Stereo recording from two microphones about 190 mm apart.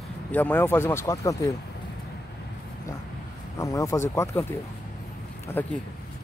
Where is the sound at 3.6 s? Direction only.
15° left (ahead or behind).